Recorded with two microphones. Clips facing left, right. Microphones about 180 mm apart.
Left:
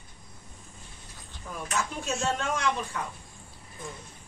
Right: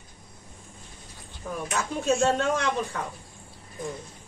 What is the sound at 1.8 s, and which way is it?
Speech, 60° right (ahead or behind).